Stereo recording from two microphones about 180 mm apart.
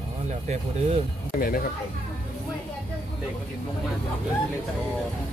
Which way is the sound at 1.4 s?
55° left (ahead or behind).